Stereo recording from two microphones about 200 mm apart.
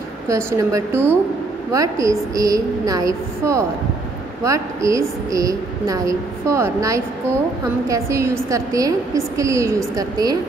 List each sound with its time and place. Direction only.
0.3 s a woman's voice: 15° right (ahead or behind)